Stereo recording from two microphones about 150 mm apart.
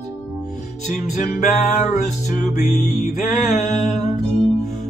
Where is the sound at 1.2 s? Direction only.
55° left (ahead or behind).